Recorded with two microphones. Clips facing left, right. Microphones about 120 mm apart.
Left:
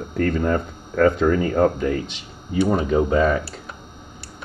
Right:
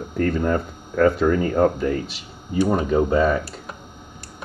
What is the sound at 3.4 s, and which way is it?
Speech, 40° right (ahead or behind).